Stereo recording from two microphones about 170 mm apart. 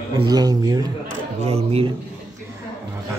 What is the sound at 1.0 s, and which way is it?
Speech, 40° right (ahead or behind).